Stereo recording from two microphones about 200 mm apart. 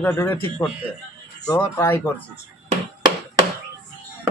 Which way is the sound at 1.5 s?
10° left (ahead or behind).